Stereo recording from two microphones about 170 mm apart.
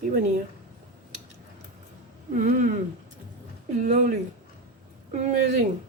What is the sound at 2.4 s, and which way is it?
Speech, 45° right (ahead or behind).